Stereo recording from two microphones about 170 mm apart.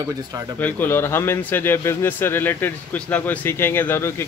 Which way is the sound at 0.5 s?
10° left (ahead or behind).